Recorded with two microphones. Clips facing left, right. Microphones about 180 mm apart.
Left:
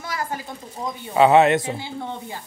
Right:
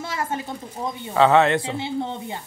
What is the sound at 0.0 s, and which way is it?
Pigeon, 25° right (ahead or behind).